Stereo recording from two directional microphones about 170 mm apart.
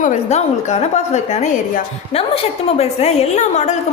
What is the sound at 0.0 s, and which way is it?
A woman's voice, 40° left (ahead or behind).